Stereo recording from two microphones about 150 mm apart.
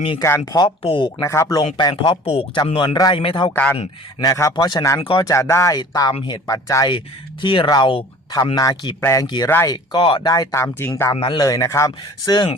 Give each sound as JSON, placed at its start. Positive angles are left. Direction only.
{"t": 0.2, "sound": "speech", "side_deg": 20}
{"t": 0.6, "sound": "speech", "side_deg": 35}
{"t": 1.2, "sound": "speech", "side_deg": 20}
{"t": 2.2, "sound": "speech", "side_deg": 45}
{"t": 2.6, "sound": "speech", "side_deg": 30}
{"t": 3.5, "sound": "a man's voice", "side_deg": 10}
{"t": 4.2, "sound": "speech", "side_deg": 20}
{"t": 7.4, "sound": "speech", "side_deg": 35}
{"t": 9.0, "sound": "speech", "side_deg": 20}
{"t": 9.2, "sound": "speech", "side_deg": 30}
{"t": 11.1, "sound": "speech", "side_deg": 35}